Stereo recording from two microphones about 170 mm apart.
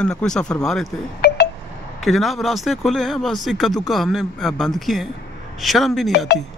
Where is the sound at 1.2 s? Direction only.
70° left (ahead or behind).